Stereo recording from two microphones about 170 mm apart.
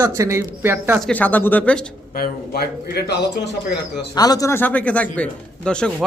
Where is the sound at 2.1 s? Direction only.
60° left (ahead or behind); by 3.5 s 80° left.